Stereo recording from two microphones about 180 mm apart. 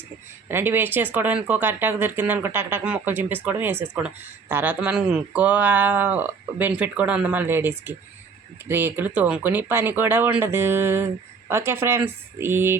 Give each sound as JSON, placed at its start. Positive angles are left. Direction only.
{"t": 0.4, "sound": "speech", "side_deg": -10}